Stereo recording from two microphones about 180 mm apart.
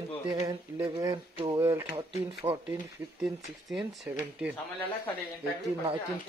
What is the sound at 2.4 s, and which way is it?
Speech, 35° right (ahead or behind).